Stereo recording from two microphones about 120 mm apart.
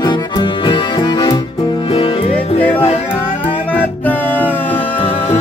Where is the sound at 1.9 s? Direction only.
50° left (ahead or behind).